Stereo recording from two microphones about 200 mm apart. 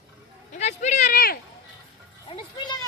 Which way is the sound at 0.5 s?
35° left (ahead or behind).